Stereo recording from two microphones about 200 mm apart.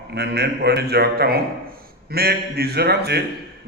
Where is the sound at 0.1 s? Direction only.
55° right (ahead or behind).